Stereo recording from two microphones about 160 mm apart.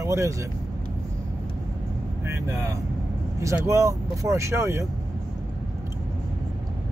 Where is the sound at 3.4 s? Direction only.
15° right (ahead or behind).